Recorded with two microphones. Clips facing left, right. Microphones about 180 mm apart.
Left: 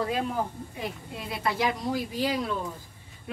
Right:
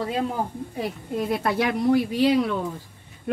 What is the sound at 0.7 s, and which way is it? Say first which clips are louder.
Speech: right 10 dB; 50° right (ahead or behind).